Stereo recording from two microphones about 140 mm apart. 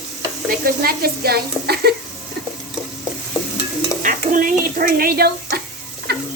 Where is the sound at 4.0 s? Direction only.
70° right (ahead or behind); by 5.6 s 90° right.